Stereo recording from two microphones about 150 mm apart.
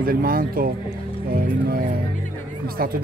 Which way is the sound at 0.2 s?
75° right (ahead or behind).